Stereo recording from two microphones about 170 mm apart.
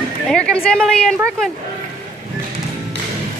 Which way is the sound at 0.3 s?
5° left (ahead or behind).